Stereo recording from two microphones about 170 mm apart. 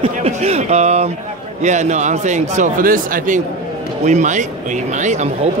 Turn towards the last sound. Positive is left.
turn(degrees=-45)  # may be behind; listen again after turning